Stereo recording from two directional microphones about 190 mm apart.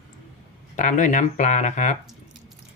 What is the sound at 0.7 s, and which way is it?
Speech, 40° left (ahead or behind).